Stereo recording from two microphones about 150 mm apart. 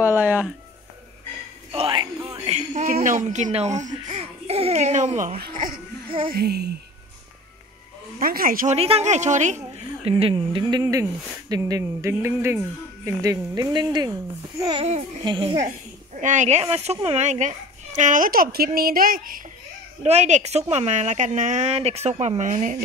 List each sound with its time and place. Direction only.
0.2 s a sound: 10° right (ahead or behind)
1.7 s a sound: 35° right (ahead or behind)
2.1 s a sound: 20° right (ahead or behind)
2.5 s a sound: 50° right (ahead or behind)
2.9 s speech: 60° right (ahead or behind)
4.1 s speech: 40° right (ahead or behind)
5.4 s speech: 65° right (ahead or behind)
6.0 s child singing: 35° right (ahead or behind)
6.3 s a child's voice: 90° right
8.2 s speech: 75° right (ahead or behind)
8.7 s a woman's voice: 40° right (ahead or behind)
10.0 s speech: 40° right (ahead or behind)
16.2 s speech: 55° right (ahead or behind)
20.0 s a woman's voice: 50° right (ahead or behind)